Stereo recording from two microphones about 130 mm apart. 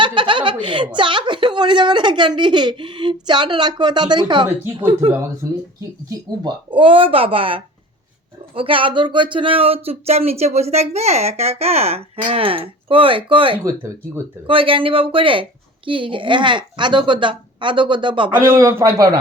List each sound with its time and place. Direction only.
0.0 s chuckle: 40° right (ahead or behind)
0.9 s speech: 40° right (ahead or behind)
4.4 s a woman's voice: 15° right (ahead or behind)
6.1 s speech: 35° right (ahead or behind)
18.6 s a man's voice: 20° right (ahead or behind)